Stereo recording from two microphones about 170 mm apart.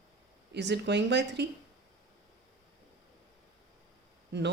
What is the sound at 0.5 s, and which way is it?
Speech, 90° right.